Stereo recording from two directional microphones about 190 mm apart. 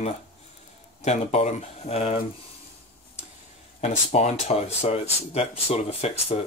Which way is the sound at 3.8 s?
35° left (ahead or behind).